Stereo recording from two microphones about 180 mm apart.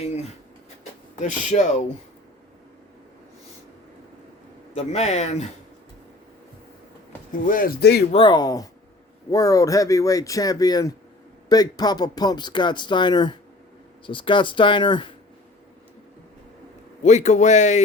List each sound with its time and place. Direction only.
1.2 s a man's voice: 40° left (ahead or behind)
4.7 s a man's voice: 35° left (ahead or behind)
7.4 s speech: 50° left (ahead or behind)
8.1 s speech: 25° left (ahead or behind)
17.0 s a man's voice: 40° left (ahead or behind)